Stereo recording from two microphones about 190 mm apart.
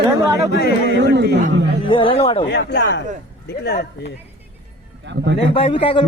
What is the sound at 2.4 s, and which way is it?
Speech, 60° left (ahead or behind).